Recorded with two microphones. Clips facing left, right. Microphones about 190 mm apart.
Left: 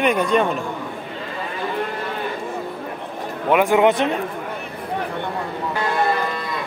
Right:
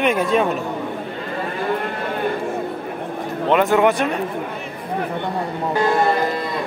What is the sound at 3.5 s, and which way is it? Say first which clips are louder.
Speech: even; 10° left (ahead or behind).